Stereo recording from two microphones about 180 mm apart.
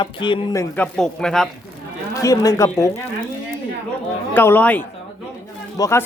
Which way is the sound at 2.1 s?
20° left (ahead or behind).